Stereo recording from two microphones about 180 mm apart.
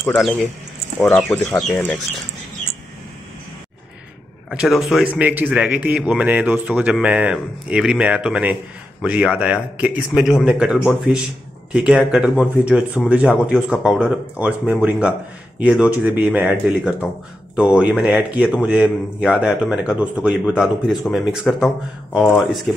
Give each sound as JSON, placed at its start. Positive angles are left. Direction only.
{"t": 0.0, "sound": "a man's voice", "side_deg": 0}
{"t": 4.5, "sound": "a man's voice", "side_deg": 0}